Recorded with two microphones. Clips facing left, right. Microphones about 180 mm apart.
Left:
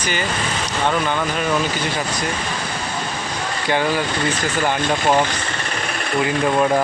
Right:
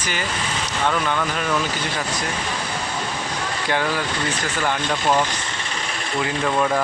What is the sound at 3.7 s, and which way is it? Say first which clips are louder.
Speech: left 4 dB; 5° left (ahead or behind).